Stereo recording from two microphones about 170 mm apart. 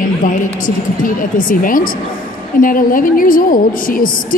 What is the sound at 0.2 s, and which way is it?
Speech, 50° left (ahead or behind).